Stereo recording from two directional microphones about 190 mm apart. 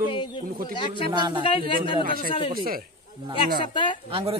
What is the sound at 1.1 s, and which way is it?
Speech, 25° right (ahead or behind).